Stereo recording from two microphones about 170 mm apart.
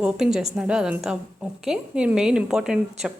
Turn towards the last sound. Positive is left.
turn(degrees=-5)  # may be behind; listen again after turning